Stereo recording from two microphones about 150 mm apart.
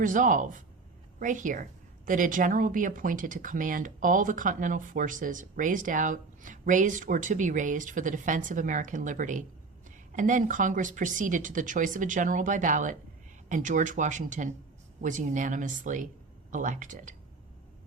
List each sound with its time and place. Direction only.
0.0 s speech: 60° right (ahead or behind)